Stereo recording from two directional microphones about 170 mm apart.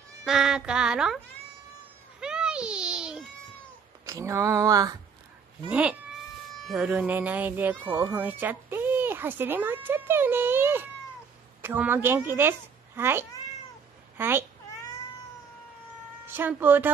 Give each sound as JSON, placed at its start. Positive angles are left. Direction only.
{"t": 0.2, "sound": "speech", "side_deg": -5}
{"t": 2.1, "sound": "a sound", "side_deg": -5}
{"t": 4.0, "sound": "speech", "side_deg": -15}
{"t": 5.7, "sound": "a child's voice", "side_deg": -5}
{"t": 16.3, "sound": "speech", "side_deg": -10}